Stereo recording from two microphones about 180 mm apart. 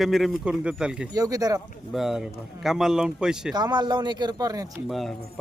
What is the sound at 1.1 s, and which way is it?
Speech, 20° right (ahead or behind).